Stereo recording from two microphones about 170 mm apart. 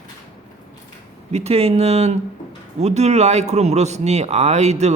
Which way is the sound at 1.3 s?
35° right (ahead or behind).